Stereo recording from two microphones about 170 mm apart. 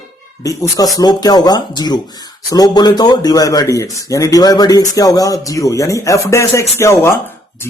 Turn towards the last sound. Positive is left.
turn(degrees=15)  # may be behind; listen again after turning